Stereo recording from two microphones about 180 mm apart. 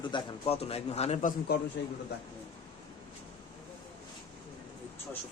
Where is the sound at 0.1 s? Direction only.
35° left (ahead or behind).